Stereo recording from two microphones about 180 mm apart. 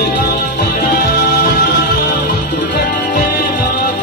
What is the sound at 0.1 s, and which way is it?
Music, 50° left (ahead or behind).